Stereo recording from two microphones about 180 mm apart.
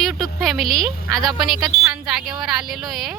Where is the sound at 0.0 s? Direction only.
Centre (ahead or behind).